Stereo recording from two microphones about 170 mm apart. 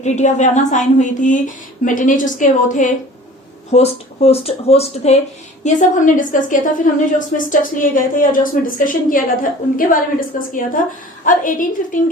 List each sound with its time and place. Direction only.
0.0 s a woman's voice: 45° left (ahead or behind)
3.7 s speech: 35° left (ahead or behind)
5.6 s a woman's voice: 50° left (ahead or behind)